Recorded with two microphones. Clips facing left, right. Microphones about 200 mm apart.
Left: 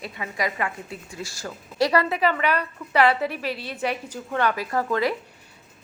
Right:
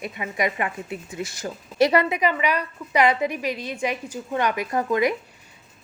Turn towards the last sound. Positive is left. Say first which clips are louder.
# right 2 dB
turn(degrees=-15)  # may be behind; listen again after turning